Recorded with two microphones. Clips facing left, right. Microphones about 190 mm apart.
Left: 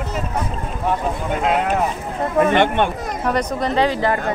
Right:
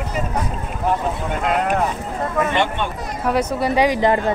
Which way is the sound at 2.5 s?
60° left (ahead or behind).